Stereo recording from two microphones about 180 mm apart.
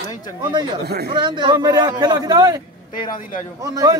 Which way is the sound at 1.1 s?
25° right (ahead or behind).